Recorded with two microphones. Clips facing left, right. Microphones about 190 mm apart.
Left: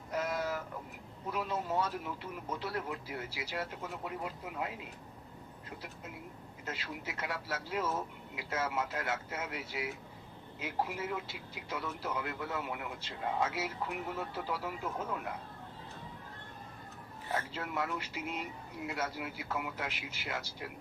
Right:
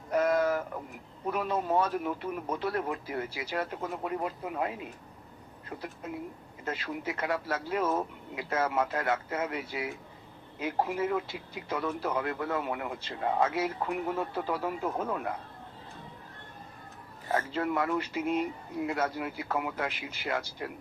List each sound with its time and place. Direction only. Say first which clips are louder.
0.1 s a sound: right 9 dB; 55° right (ahead or behind)
1.3 s speech: right 6 dB; 55° right (ahead or behind)
6.7 s speech: right 8 dB; 55° right (ahead or behind)
17.3 s speech: right 8 dB; 55° right (ahead or behind)